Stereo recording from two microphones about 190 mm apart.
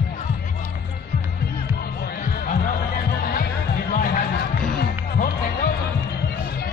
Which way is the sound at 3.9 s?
45° left (ahead or behind).